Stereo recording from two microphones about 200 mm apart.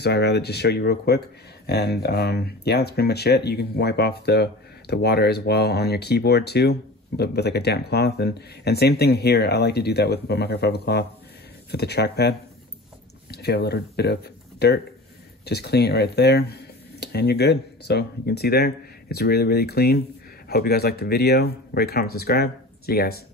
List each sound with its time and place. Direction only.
0.0 s speech: 55° left (ahead or behind)